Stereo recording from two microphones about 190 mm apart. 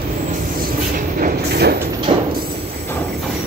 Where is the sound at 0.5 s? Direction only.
45° right (ahead or behind).